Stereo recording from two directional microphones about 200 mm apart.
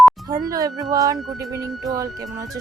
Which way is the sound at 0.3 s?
20° right (ahead or behind).